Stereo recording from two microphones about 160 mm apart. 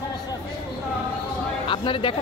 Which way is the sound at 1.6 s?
30° left (ahead or behind).